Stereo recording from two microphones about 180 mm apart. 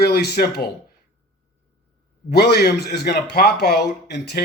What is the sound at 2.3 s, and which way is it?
A man's voice, 60° left (ahead or behind).